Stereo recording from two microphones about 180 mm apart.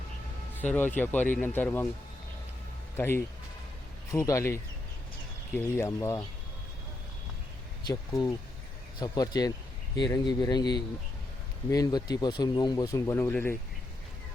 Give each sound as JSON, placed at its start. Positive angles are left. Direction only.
{"t": 0.6, "sound": "speech", "side_deg": 10}
{"t": 2.9, "sound": "speech", "side_deg": 15}
{"t": 5.5, "sound": "speech", "side_deg": 15}
{"t": 9.0, "sound": "speech", "side_deg": 20}